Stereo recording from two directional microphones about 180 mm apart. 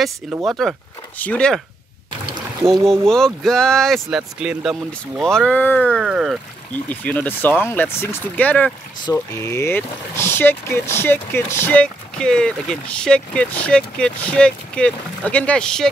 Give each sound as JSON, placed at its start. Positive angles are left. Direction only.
{"t": 0.5, "sound": "speech", "side_deg": 0}
{"t": 2.6, "sound": "speech", "side_deg": -15}
{"t": 3.4, "sound": "speech", "side_deg": 5}
{"t": 6.7, "sound": "speech", "side_deg": 10}